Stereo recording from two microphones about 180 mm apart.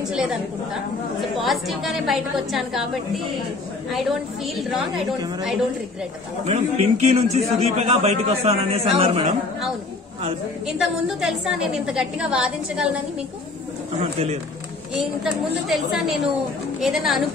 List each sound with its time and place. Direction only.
0.1 s a woman's voice: 5° right (ahead or behind)
1.4 s a woman's voice: centre (ahead or behind)
6.4 s a man's voice: 40° right (ahead or behind)
10.8 s a woman's voice: centre (ahead or behind)
14.1 s a man's voice: 35° right (ahead or behind)
15.7 s a woman's voice: centre (ahead or behind)